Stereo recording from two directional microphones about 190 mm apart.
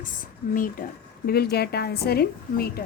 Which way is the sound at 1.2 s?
55° left (ahead or behind).